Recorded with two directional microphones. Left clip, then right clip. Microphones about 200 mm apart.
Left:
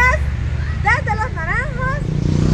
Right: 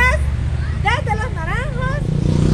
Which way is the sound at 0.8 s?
25° right (ahead or behind).